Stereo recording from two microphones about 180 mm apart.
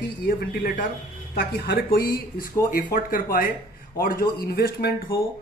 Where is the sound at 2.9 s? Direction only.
50° left (ahead or behind).